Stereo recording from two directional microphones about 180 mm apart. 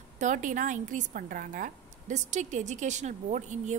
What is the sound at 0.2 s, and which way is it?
A woman's voice, 45° right (ahead or behind).